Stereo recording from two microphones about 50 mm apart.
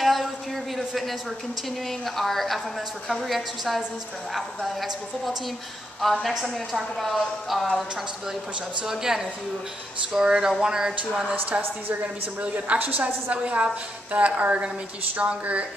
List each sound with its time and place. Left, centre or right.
0.0 s a sound: centre
0.7 s a woman's voice: centre
8.8 s speech: centre
12.0 s a woman's voice: right